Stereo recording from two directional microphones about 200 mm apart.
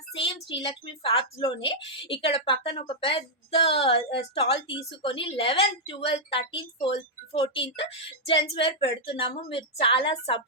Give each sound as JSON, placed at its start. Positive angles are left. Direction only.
{"t": 0.2, "sound": "a woman's voice", "side_deg": 25}